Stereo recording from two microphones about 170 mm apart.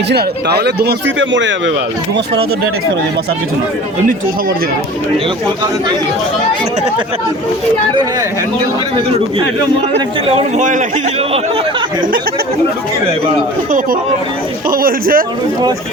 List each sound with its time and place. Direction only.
0.1 s a man's voice: 70° right (ahead or behind); by 1.7 s 90° right
10.6 s a man's voice: 45° right (ahead or behind)
14.7 s a man's voice: 55° right (ahead or behind)